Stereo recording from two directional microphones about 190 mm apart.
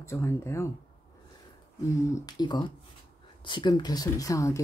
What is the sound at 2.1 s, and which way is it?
Speech, 20° left (ahead or behind).